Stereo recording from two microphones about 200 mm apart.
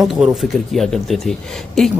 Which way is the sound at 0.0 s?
Centre (ahead or behind).